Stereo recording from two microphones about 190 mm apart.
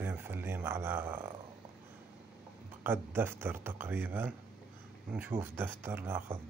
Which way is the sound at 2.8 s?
10° right (ahead or behind).